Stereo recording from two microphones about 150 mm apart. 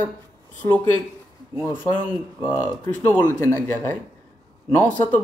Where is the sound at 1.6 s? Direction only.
15° left (ahead or behind).